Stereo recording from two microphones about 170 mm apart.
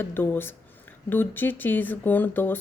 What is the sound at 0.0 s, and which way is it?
Speech, 10° left (ahead or behind).